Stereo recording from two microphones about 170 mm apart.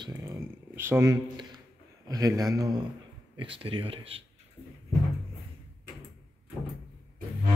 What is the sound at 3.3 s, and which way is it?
Speech, 30° right (ahead or behind).